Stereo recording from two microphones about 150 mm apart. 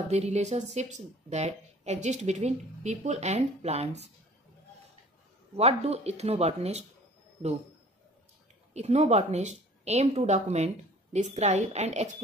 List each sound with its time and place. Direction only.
0.1 s speech: 50° right (ahead or behind)
5.6 s speech: 45° right (ahead or behind)
8.7 s speech: 45° right (ahead or behind)